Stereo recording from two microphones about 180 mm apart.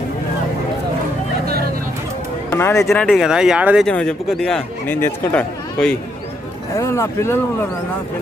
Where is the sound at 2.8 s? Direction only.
Centre (ahead or behind); by 7.4 s 15° left (ahead or behind).